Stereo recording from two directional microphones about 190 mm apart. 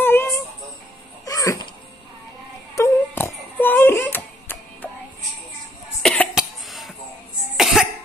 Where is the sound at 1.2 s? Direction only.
20° left (ahead or behind).